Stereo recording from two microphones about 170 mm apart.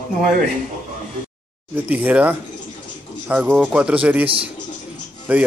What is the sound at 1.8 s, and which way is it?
Speech, 10° right (ahead or behind).